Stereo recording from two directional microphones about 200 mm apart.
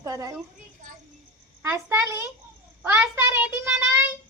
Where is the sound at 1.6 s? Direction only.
15° right (ahead or behind).